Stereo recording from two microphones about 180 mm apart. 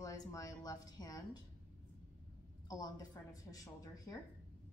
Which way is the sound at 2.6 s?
20° left (ahead or behind).